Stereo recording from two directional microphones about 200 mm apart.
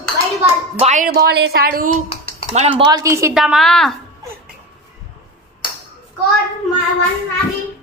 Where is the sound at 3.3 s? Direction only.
Centre (ahead or behind).